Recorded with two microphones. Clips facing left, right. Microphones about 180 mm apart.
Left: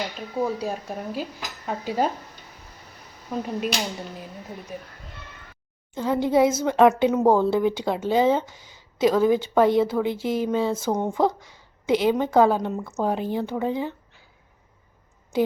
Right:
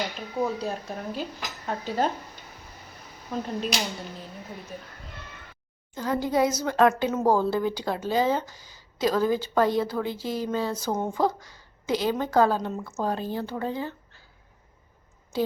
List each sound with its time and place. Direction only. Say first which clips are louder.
0.3 s speech: left 2 dB; 10° left (ahead or behind)
3.3 s speech: left 2 dB; 10° left (ahead or behind)
5.9 s speech: left 4 dB; 25° left (ahead or behind)